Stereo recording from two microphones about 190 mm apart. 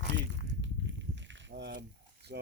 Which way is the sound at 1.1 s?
70° right (ahead or behind).